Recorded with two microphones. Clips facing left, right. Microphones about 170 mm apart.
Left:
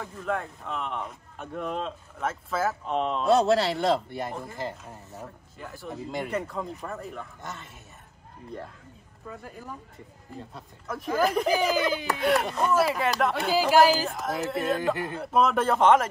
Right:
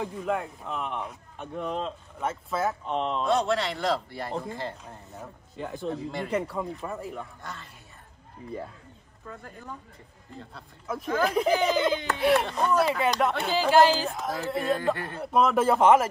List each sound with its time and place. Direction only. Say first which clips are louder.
0.0 s speech: right 2 dB; 15° right (ahead or behind)
3.3 s a man's voice: left 6 dB; 35° left (ahead or behind)
4.6 s speech: left 1 dB; 5° left (ahead or behind)
5.6 s speech: right 7 dB; 20° right (ahead or behind)
5.9 s speech: even; 15° left (ahead or behind)
6.3 s speech: right 2 dB; 5° right (ahead or behind)
7.4 s a man's voice: left 1 dB; 20° left (ahead or behind)
9.3 s speech: left 1 dB; 10° left (ahead or behind)
10.9 s speech: left 1 dB; centre (ahead or behind)